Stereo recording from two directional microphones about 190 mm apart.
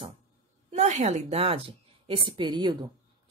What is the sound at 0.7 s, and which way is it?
A woman's voice, 40° right (ahead or behind).